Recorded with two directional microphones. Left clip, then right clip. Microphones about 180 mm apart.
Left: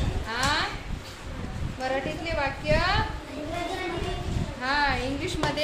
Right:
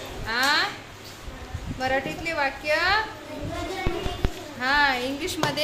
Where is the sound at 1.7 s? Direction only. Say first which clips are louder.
Right 3 dB; 35° right (ahead or behind).